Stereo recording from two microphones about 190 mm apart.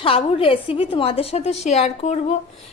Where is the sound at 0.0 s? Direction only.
30° left (ahead or behind).